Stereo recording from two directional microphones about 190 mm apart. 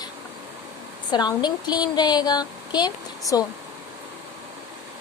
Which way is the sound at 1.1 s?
20° left (ahead or behind).